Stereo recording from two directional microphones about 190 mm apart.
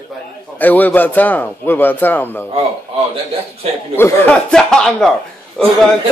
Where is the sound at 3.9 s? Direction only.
10° left (ahead or behind).